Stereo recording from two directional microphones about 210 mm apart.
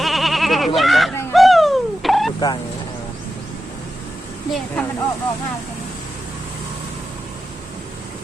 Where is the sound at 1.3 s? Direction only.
Centre (ahead or behind).